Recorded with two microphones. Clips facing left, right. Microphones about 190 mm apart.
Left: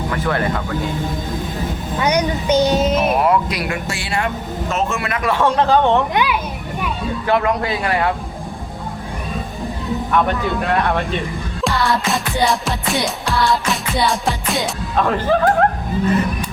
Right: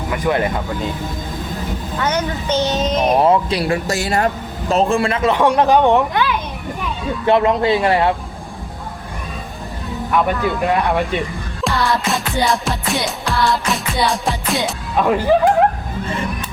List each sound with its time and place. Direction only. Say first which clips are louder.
0.1 s speech: right 3 dB; 15° right (ahead or behind)
2.0 s speech: left 3 dB; 15° left (ahead or behind)
3.1 s speech: right 2 dB; 25° right (ahead or behind)
6.1 s a child's voice: even; 10° left (ahead or behind)
7.3 s a man's voice: right 4 dB; 25° right (ahead or behind)
10.1 s speech: right 2 dB; 5° right (ahead or behind)
11.6 s music: even; centre (ahead or behind)
14.9 s speech: right 2 dB; 10° right (ahead or behind)